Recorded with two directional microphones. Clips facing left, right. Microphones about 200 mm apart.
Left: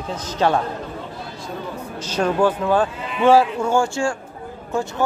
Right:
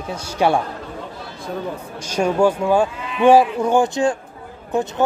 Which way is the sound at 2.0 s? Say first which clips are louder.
Right 2 dB; 10° right (ahead or behind).